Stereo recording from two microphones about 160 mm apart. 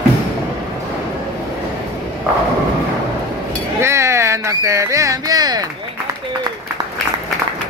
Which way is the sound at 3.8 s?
15° right (ahead or behind).